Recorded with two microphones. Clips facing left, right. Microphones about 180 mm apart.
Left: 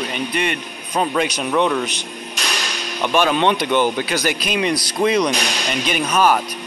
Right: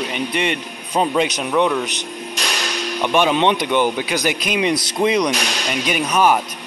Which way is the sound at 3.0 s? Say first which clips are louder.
Right 1 dB; 15° right (ahead or behind).